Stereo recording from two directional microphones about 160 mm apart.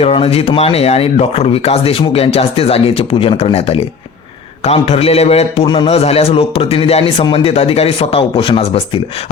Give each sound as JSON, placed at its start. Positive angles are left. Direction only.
{"t": 0.0, "sound": "speech", "side_deg": 40}